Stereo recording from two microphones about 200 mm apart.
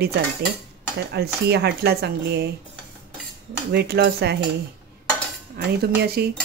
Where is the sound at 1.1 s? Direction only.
55° right (ahead or behind).